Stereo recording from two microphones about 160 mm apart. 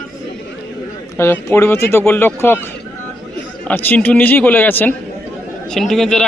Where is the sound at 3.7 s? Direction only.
10° left (ahead or behind).